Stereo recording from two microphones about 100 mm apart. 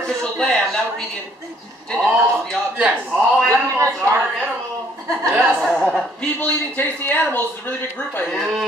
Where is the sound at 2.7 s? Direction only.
15° right (ahead or behind).